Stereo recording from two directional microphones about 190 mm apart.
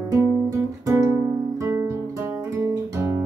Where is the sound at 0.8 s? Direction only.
15° right (ahead or behind).